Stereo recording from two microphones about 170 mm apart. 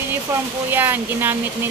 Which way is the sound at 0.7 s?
10° right (ahead or behind).